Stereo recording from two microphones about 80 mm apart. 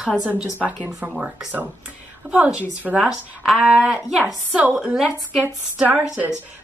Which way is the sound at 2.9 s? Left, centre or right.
Centre.